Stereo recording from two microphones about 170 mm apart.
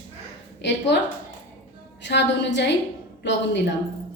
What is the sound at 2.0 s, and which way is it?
Speech, 90° left.